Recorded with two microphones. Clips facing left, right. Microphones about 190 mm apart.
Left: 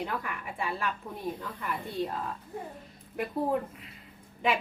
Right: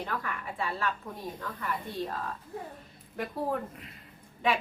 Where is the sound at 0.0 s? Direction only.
15° left (ahead or behind).